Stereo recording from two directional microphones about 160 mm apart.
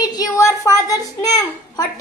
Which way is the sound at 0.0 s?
25° left (ahead or behind).